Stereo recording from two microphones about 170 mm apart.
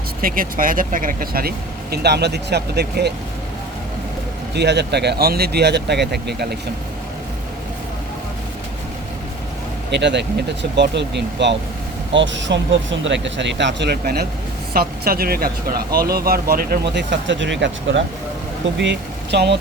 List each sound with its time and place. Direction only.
0.2 s speech: 55° right (ahead or behind); by 3.1 s 75° right (ahead or behind)
4.5 s speech: 85° right
9.9 s speech: 90° right
14.0 s speech: 65° right (ahead or behind); by 19.5 s 90° right